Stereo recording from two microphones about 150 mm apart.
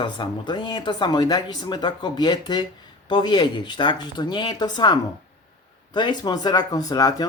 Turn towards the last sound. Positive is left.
turn(degrees=25)  # may be behind; listen again after turning